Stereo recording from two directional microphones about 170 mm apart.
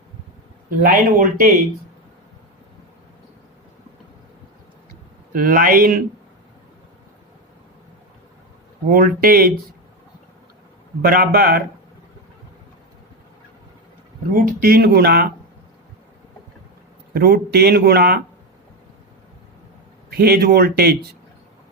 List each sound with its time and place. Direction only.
0.8 s speech: 55° right (ahead or behind)
5.3 s speech: 55° right (ahead or behind)
8.9 s speech: 60° right (ahead or behind)
11.0 s speech: 60° right (ahead or behind)
14.3 s a man's voice: 55° right (ahead or behind)
17.2 s a man's voice: 65° right (ahead or behind)
20.1 s a man's voice: 65° right (ahead or behind)